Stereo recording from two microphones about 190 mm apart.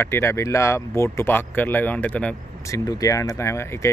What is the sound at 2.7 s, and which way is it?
Speech, 15° left (ahead or behind).